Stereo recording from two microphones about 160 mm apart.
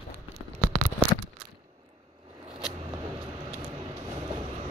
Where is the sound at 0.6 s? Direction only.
60° right (ahead or behind).